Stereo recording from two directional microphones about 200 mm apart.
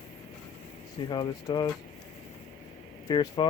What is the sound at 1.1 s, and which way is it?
Speech, 20° left (ahead or behind).